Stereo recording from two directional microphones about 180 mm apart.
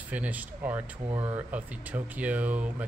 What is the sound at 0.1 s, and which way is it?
Speech, 10° right (ahead or behind).